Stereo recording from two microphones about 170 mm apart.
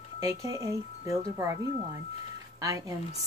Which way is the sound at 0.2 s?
20° right (ahead or behind).